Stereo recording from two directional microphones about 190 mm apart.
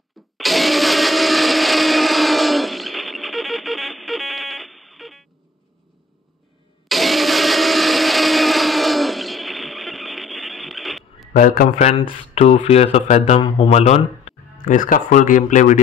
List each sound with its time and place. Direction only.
0.4 s blender: centre (ahead or behind)
6.9 s blender: centre (ahead or behind)
11.3 s a man's voice: 45° left (ahead or behind)
11.8 s speech: 30° left (ahead or behind)